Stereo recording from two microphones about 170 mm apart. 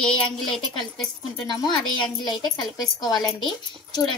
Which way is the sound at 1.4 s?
25° left (ahead or behind).